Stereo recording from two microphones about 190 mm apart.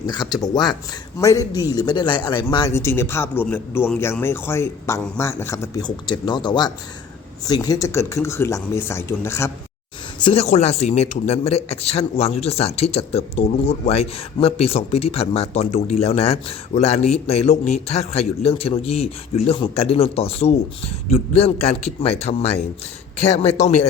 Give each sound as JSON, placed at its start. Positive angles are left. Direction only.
{"t": 0.1, "sound": "a man's voice", "side_deg": 20}
{"t": 10.2, "sound": "a man's voice", "side_deg": 35}